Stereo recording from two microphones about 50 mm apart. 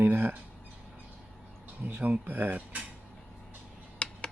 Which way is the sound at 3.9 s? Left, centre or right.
Centre.